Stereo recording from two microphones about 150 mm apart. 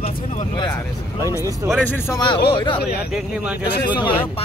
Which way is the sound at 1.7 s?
10° left (ahead or behind).